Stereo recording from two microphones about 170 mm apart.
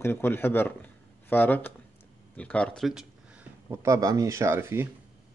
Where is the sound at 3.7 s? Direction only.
20° right (ahead or behind).